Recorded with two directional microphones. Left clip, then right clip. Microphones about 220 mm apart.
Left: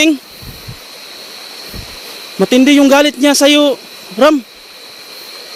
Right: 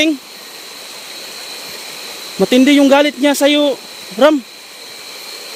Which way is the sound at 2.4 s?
5° left (ahead or behind).